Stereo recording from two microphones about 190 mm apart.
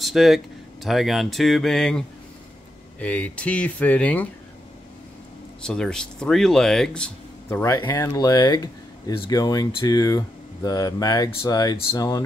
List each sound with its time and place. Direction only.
0.0 s speech: centre (ahead or behind)
5.6 s speech: 5° left (ahead or behind)